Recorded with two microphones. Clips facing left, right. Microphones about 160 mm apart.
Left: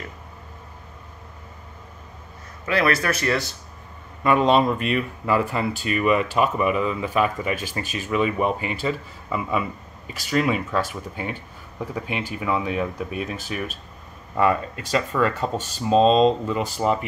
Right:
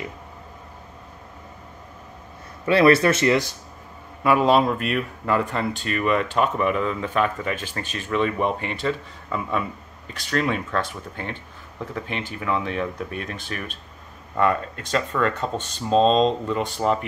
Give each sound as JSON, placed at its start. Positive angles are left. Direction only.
{"t": 2.6, "sound": "speech", "side_deg": -30}
{"t": 4.2, "sound": "speech", "side_deg": -5}